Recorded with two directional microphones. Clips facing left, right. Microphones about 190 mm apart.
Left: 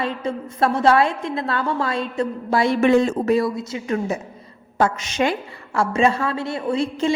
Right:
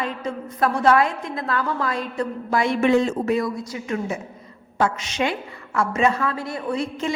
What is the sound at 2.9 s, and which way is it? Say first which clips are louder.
Speech: left 1 dB; 50° left (ahead or behind).